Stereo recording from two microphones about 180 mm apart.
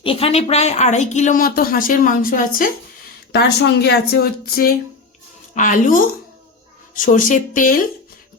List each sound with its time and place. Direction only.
0.0 s a woman's voice: 30° left (ahead or behind); by 2.7 s 50° left (ahead or behind)
3.3 s speech: 65° left (ahead or behind)
5.5 s speech: 45° left (ahead or behind)